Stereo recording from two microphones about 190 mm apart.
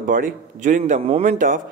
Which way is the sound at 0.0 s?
45° right (ahead or behind).